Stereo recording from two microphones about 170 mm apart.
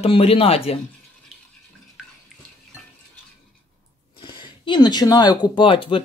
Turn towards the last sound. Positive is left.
turn(degrees=30)  # may be behind; listen again after turning